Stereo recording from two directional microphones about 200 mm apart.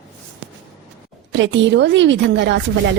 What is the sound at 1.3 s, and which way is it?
A woman's voice, 65° right (ahead or behind).